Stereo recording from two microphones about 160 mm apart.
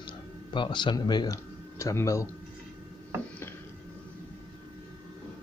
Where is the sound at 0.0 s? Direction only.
30° left (ahead or behind).